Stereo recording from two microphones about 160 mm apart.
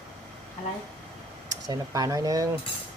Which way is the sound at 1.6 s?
25° right (ahead or behind).